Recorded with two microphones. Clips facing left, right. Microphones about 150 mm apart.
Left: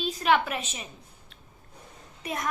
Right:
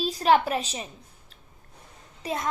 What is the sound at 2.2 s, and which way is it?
Speech, 30° right (ahead or behind).